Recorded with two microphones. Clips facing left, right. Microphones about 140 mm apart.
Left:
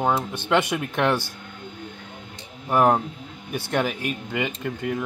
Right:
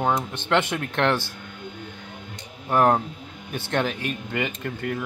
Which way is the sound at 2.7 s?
5° left (ahead or behind).